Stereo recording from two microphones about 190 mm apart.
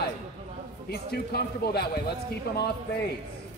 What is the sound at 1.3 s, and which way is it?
Speech, 55° left (ahead or behind).